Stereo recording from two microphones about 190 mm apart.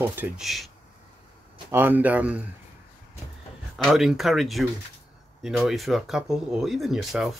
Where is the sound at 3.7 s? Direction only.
Centre (ahead or behind).